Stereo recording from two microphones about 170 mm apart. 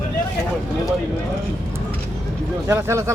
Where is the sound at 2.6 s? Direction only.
15° right (ahead or behind).